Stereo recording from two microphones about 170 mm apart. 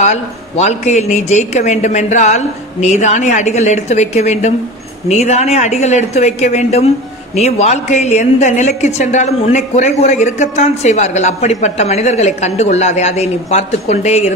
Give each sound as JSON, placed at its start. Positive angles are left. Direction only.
{"t": 0.0, "sound": "a woman's voice", "side_deg": 40}